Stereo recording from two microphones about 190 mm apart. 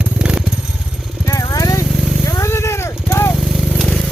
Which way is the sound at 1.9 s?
Centre (ahead or behind).